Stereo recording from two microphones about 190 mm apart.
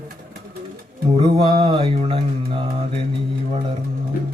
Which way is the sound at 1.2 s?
25° right (ahead or behind).